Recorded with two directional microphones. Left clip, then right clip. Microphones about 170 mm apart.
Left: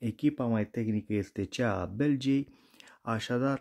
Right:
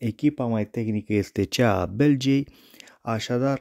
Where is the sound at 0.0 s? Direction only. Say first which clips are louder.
Right 6 dB; 30° right (ahead or behind).